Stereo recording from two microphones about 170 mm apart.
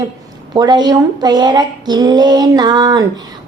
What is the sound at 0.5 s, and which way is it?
A woman's voice, 25° right (ahead or behind).